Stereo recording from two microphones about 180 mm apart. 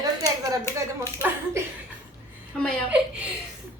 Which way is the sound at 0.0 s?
20° right (ahead or behind).